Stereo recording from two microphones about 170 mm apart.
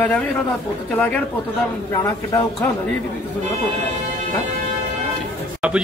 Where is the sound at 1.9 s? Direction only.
20° left (ahead or behind).